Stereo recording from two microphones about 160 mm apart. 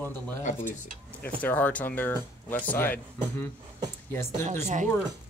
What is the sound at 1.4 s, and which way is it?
Speech, 10° left (ahead or behind).